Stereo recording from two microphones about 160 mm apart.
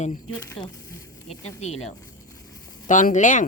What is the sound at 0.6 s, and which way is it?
Speech, 35° left (ahead or behind).